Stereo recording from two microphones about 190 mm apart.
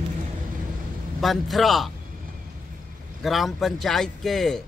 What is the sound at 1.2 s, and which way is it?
Speech, centre (ahead or behind).